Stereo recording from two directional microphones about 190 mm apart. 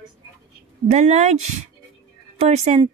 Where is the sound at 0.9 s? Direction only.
40° right (ahead or behind).